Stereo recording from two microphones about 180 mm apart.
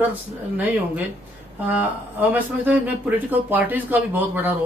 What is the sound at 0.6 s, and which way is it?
Speech, 10° right (ahead or behind).